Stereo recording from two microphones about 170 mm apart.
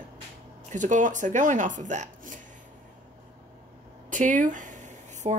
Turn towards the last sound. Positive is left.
turn(degrees=-45)  # may be behind; listen again after turning